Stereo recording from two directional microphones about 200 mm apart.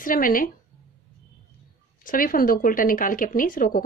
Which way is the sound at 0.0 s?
45° left (ahead or behind).